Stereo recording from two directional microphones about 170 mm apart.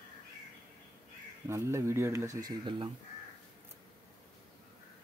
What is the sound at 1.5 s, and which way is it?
Speech, 15° right (ahead or behind).